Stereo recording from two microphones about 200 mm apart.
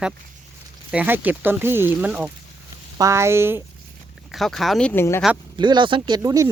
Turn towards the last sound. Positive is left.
turn(degrees=-15)  # may be behind; listen again after turning